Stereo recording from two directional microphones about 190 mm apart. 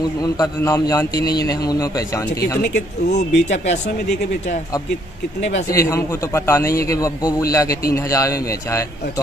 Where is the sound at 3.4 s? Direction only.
35° left (ahead or behind).